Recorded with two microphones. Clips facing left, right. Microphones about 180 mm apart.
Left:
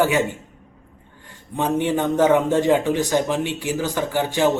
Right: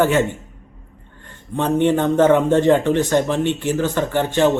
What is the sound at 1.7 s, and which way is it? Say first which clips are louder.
Speech: right 5 dB; centre (ahead or behind).